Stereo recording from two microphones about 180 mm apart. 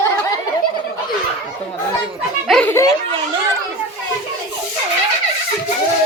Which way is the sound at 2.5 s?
10° left (ahead or behind).